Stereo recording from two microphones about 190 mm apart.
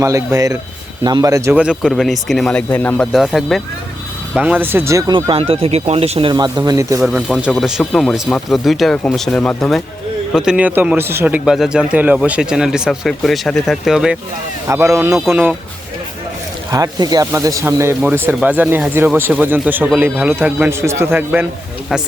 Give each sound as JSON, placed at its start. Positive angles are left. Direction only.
{"t": 0.0, "sound": "a man's voice", "side_deg": -15}
{"t": 7.0, "sound": "a man's voice", "side_deg": 0}
{"t": 14.7, "sound": "speech", "side_deg": -15}
{"t": 16.7, "sound": "speech", "side_deg": -20}